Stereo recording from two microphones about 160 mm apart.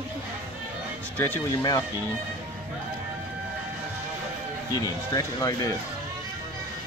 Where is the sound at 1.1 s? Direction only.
15° left (ahead or behind).